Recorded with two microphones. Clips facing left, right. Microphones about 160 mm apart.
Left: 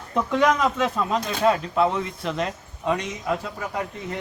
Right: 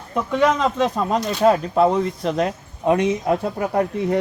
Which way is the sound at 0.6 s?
35° right (ahead or behind).